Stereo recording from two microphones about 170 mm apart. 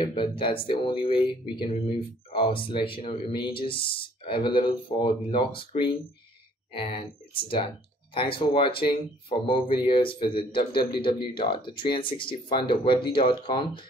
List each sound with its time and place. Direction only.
0.0 s speech: 30° left (ahead or behind)
6.7 s speech: 30° left (ahead or behind)